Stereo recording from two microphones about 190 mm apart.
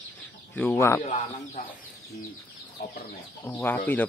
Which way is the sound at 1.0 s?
35° left (ahead or behind).